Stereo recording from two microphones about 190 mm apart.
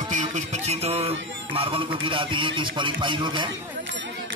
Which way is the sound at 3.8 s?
75° right (ahead or behind).